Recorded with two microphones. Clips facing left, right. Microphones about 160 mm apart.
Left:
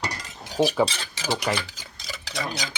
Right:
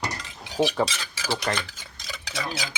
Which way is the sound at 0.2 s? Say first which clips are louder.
Left 2 dB; 45° left (ahead or behind).